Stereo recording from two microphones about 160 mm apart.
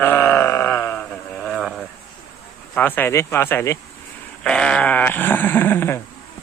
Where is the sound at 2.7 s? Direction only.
10° left (ahead or behind).